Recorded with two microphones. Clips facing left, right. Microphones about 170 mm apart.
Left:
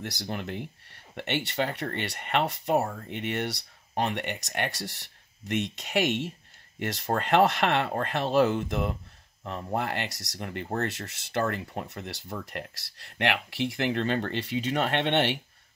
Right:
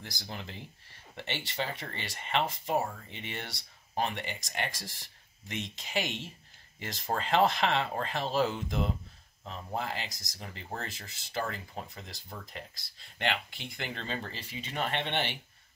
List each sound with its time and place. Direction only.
0.0 s speech: 70° left (ahead or behind)